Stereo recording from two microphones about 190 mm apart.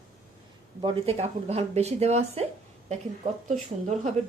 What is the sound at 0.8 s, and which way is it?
Speech, 35° right (ahead or behind).